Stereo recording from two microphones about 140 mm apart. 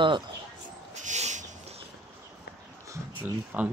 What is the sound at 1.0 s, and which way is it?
Owl, 55° right (ahead or behind).